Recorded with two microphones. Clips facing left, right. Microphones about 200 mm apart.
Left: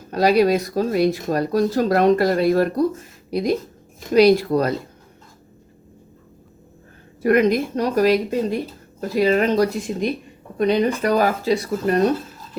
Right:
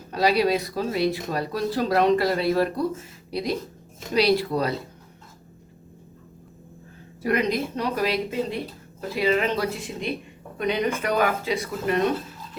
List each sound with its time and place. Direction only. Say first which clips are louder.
0.1 s speech: left 5 dB; 45° left (ahead or behind)
7.2 s speech: left 7 dB; 50° left (ahead or behind)